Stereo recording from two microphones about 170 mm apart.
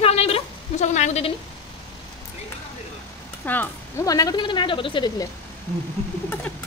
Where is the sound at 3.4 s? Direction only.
10° left (ahead or behind).